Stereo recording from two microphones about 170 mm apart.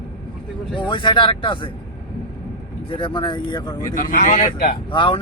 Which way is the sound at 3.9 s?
55° left (ahead or behind).